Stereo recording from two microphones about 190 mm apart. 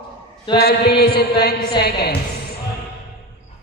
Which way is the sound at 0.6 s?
55° left (ahead or behind).